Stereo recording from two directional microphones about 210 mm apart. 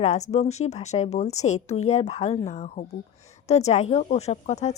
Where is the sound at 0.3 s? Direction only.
30° left (ahead or behind).